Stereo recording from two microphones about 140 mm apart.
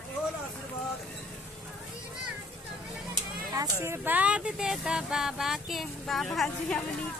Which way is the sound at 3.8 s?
15° right (ahead or behind).